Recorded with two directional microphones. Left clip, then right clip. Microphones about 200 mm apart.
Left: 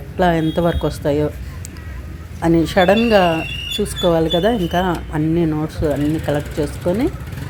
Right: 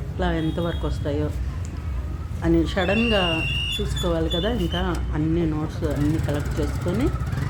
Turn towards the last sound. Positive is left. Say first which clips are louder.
# left 7 dB
turn(degrees=25)  # may be behind; listen again after turning